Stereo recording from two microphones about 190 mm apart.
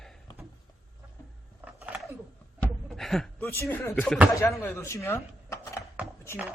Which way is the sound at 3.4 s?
15° left (ahead or behind).